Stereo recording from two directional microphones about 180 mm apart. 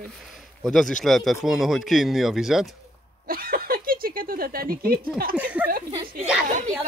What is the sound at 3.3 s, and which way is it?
Snicker, 55° right (ahead or behind).